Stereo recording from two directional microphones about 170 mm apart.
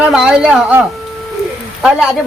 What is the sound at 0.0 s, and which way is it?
Speech, 5° right (ahead or behind).